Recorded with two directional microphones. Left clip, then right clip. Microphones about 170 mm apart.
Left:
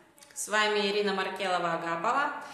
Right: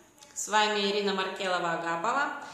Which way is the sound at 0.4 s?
Centre (ahead or behind).